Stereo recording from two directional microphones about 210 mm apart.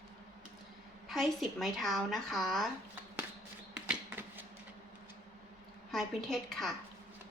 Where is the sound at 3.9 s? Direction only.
10° right (ahead or behind).